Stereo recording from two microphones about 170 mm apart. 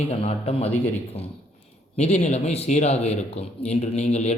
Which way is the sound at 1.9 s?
40° left (ahead or behind).